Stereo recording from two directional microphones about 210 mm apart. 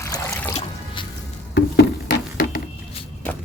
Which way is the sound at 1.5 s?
55° left (ahead or behind).